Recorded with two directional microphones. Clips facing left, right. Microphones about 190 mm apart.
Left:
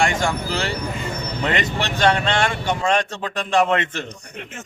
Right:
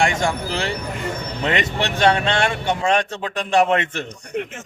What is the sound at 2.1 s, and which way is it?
A man's voice, 20° right (ahead or behind).